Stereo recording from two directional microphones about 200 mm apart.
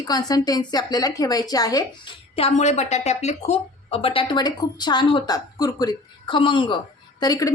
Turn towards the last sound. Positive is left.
turn(degrees=20)  # may be behind; listen again after turning